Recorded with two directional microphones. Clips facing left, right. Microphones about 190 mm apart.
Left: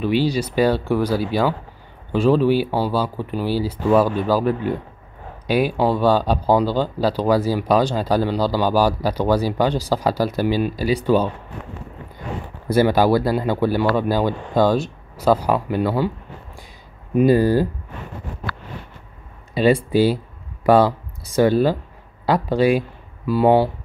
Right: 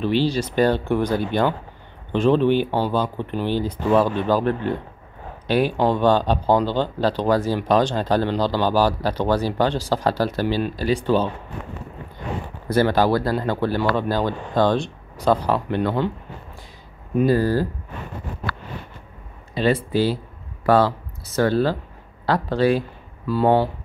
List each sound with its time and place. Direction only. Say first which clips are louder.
0.0 s speech: left 1 dB; 10° left (ahead or behind)
12.6 s speech: left 2 dB; 10° left (ahead or behind)
17.2 s speech: left 3 dB; 15° left (ahead or behind)
19.5 s speech: left 4 dB; 10° left (ahead or behind)